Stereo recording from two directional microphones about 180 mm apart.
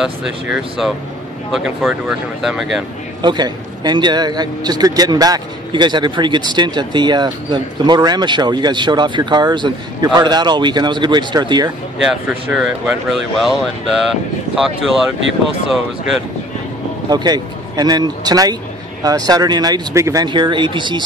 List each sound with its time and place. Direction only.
0.0 s speech: 5° right (ahead or behind)
3.2 s a man's voice: 25° right (ahead or behind)
12.0 s speech: 5° right (ahead or behind)
17.1 s a man's voice: 20° right (ahead or behind)